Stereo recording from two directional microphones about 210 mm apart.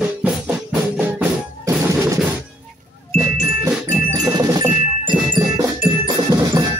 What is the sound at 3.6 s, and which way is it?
Jingle, 15° right (ahead or behind).